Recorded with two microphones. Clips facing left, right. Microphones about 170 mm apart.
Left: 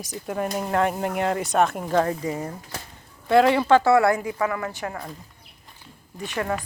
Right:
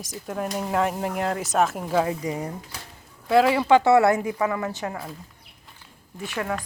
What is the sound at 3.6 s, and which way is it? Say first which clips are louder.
A woman's voice: even; 20° right (ahead or behind).